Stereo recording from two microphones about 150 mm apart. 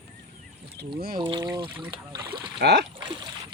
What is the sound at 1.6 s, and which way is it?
Speech, 10° right (ahead or behind).